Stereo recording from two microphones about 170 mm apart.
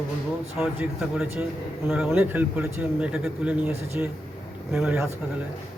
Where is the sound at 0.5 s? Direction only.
5° right (ahead or behind).